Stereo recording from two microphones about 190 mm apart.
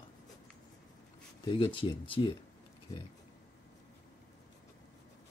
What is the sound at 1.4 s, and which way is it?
Speech, 25° left (ahead or behind).